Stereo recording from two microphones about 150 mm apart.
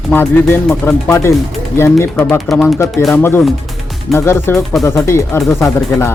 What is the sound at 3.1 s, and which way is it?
Speech, 15° left (ahead or behind).